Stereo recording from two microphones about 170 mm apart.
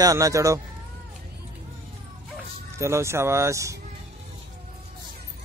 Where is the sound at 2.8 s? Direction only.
15° right (ahead or behind).